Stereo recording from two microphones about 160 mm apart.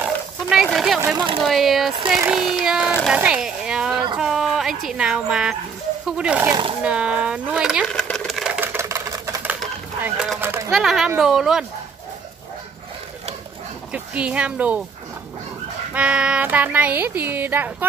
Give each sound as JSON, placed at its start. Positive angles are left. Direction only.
{"t": 0.0, "sound": "wild animals", "side_deg": -5}
{"t": 1.0, "sound": "speech", "side_deg": -30}
{"t": 1.4, "sound": "speech", "side_deg": 0}
{"t": 8.5, "sound": "a sound", "side_deg": -15}
{"t": 10.0, "sound": "speech", "side_deg": 0}
{"t": 10.4, "sound": "speech", "side_deg": -15}
{"t": 10.7, "sound": "speech", "side_deg": 0}
{"t": 13.9, "sound": "speech", "side_deg": -10}
{"t": 15.9, "sound": "speech", "side_deg": -10}